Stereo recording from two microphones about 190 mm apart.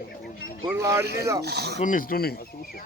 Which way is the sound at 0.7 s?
15° right (ahead or behind).